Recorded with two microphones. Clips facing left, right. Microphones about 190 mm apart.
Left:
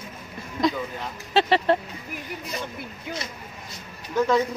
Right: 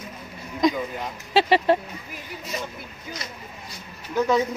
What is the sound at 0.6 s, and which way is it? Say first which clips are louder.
A man's voice: right 3 dB; 15° right (ahead or behind).